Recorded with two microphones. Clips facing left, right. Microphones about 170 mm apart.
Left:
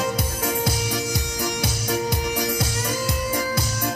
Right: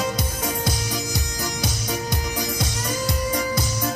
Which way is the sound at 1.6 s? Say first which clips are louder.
Left 2 dB; 10° left (ahead or behind).